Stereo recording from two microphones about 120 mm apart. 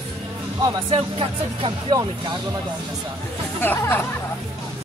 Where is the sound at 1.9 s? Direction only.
40° right (ahead or behind).